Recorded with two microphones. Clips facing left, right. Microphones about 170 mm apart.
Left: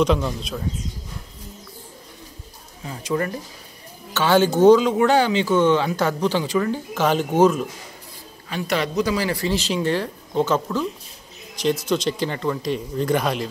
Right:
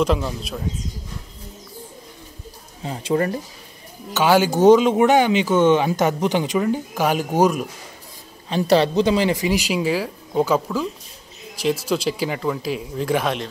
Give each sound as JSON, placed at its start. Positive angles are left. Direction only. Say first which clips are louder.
{"t": 0.0, "sound": "speech", "louder": "left 1 dB", "side_deg": -5}
{"t": 2.8, "sound": "speech", "louder": "right 3 dB", "side_deg": -30}
{"t": 4.1, "sound": "speech", "louder": "right 1 dB", "side_deg": -10}
{"t": 8.5, "sound": "speech", "louder": "right 7 dB", "side_deg": -30}
{"t": 11.9, "sound": "speech", "louder": "even", "side_deg": -5}